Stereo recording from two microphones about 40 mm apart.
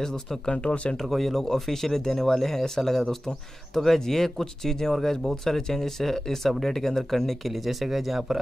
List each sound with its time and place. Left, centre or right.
0.0 s speech: centre
0.9 s speech: centre